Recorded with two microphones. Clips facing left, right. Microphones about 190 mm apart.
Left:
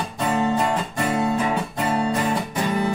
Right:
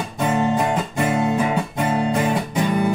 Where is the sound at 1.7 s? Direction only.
20° right (ahead or behind).